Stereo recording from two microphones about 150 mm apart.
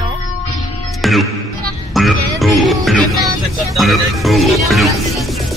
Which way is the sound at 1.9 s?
Centre (ahead or behind).